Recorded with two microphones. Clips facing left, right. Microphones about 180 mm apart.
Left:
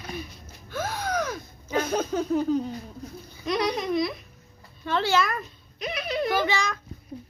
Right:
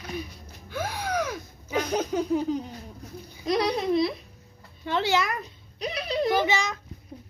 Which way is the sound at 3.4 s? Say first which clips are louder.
Right 2 dB; 35° right (ahead or behind).